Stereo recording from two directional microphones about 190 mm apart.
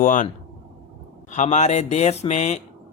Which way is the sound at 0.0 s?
45° left (ahead or behind).